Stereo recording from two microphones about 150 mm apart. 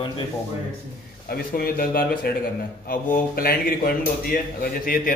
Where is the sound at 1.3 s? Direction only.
80° left.